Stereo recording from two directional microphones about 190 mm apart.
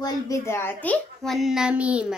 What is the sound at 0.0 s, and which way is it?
A child's voice, 15° left (ahead or behind).